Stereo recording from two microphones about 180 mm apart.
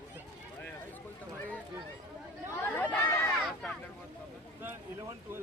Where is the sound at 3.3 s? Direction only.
Centre (ahead or behind).